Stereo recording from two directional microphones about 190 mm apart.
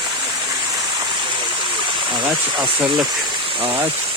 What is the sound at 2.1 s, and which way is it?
Speech, 25° right (ahead or behind).